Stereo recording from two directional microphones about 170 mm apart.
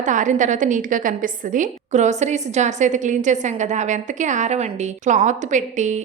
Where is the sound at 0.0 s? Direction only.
45° right (ahead or behind).